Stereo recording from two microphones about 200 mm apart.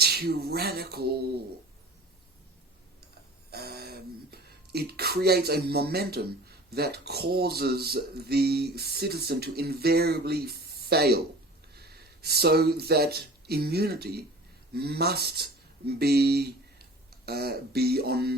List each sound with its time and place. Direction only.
0.0 s speech: 50° right (ahead or behind)
3.5 s speech: 50° right (ahead or behind)